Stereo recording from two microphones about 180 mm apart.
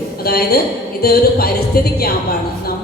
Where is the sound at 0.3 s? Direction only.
55° left (ahead or behind).